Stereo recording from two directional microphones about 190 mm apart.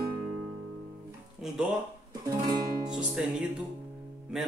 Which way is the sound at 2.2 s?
20° right (ahead or behind).